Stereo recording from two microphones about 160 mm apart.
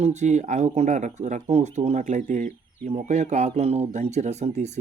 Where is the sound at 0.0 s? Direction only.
45° right (ahead or behind).